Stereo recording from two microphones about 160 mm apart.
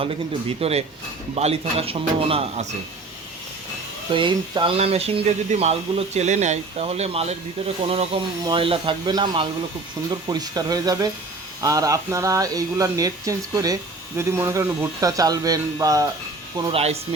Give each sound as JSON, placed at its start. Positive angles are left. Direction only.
{"t": 0.6, "sound": "speech", "side_deg": -40}
{"t": 4.1, "sound": "speech", "side_deg": -30}
{"t": 16.7, "sound": "speech", "side_deg": -40}